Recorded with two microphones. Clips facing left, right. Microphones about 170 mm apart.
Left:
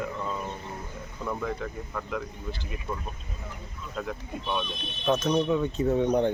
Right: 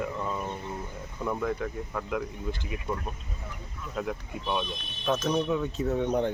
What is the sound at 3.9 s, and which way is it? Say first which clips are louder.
Speech: right 1 dB; 5° right (ahead or behind).